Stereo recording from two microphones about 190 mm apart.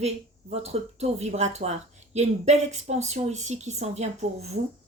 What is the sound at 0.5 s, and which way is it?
Speech, 35° right (ahead or behind).